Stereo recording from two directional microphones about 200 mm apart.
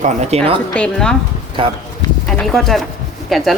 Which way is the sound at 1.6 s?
25° right (ahead or behind).